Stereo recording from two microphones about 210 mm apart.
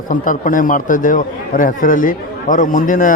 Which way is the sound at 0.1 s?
40° left (ahead or behind).